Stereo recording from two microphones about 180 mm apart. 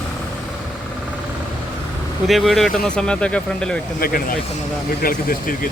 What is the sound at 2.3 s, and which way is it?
Speech, centre (ahead or behind).